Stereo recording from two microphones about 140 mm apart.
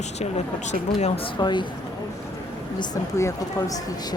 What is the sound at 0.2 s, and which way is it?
Speech, 55° left (ahead or behind).